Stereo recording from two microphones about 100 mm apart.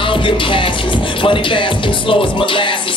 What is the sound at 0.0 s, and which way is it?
Music, 60° left (ahead or behind).